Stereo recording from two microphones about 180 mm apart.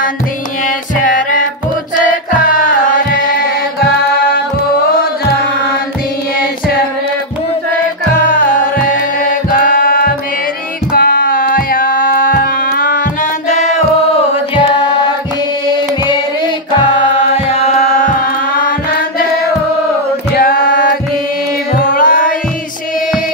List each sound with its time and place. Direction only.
0.7 s music: 45° left (ahead or behind)
9.5 s music: 50° left (ahead or behind)
18.0 s music: 50° left (ahead or behind)
20.3 s chant: 55° left (ahead or behind)
21.8 s music: 50° left (ahead or behind)